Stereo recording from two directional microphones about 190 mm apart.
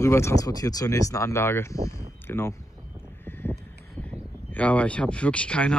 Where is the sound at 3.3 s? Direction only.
10° left (ahead or behind).